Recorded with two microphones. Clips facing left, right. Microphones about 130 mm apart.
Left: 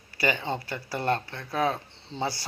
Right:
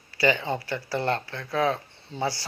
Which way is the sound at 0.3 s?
20° left (ahead or behind).